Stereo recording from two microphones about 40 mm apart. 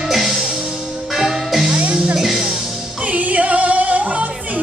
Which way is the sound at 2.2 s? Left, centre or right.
Centre.